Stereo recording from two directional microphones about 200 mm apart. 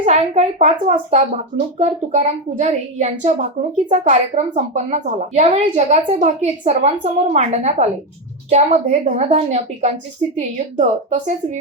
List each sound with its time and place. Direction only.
0.0 s speech: 35° right (ahead or behind)